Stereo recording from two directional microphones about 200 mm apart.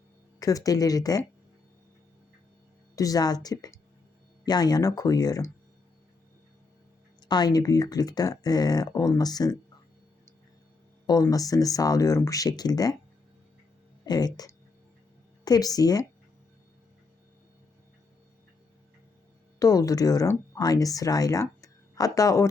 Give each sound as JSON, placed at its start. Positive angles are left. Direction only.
{"t": 0.3, "sound": "speech", "side_deg": 15}
{"t": 2.9, "sound": "speech", "side_deg": 15}
{"t": 7.2, "sound": "speech", "side_deg": 20}
{"t": 11.0, "sound": "speech", "side_deg": 20}
{"t": 14.0, "sound": "speech", "side_deg": 20}
{"t": 19.5, "sound": "speech", "side_deg": 15}